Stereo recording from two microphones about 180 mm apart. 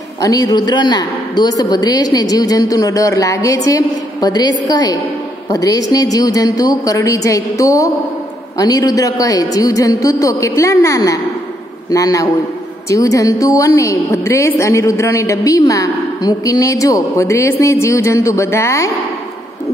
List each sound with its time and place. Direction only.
0.2 s a woman's voice: 20° left (ahead or behind)